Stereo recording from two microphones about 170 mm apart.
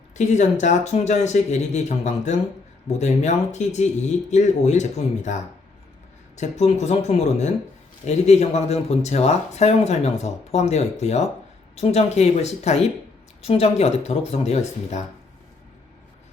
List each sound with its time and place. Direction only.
0.2 s speech: 45° left (ahead or behind)